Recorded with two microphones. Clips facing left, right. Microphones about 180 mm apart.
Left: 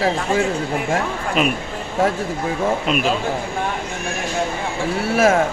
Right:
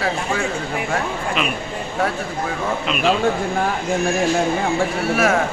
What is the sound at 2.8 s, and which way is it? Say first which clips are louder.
Speech: left 1 dB; 45° left (ahead or behind).